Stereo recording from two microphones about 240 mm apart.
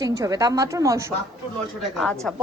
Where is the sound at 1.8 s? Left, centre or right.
Centre.